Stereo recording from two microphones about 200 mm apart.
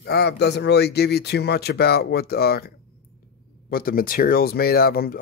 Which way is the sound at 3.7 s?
45° left (ahead or behind).